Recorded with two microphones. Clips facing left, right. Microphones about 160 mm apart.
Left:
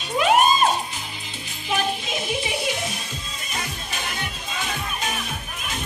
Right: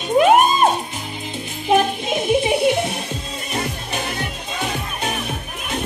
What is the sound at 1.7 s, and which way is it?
Music, 55° right (ahead or behind).